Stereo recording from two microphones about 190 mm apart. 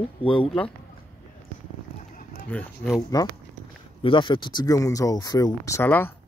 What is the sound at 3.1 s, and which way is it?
Speech, 20° left (ahead or behind).